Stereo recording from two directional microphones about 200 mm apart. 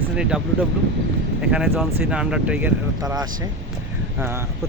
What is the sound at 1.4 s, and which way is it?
Speech, 5° right (ahead or behind).